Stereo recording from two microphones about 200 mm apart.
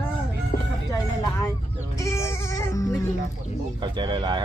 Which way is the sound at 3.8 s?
20° right (ahead or behind).